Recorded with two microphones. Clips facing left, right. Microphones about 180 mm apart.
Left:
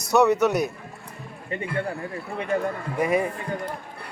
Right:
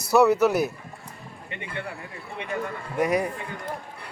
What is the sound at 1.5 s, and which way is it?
Speech, 40° left (ahead or behind).